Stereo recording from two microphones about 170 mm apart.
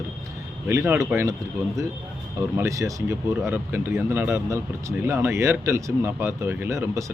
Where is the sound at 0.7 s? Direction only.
15° right (ahead or behind).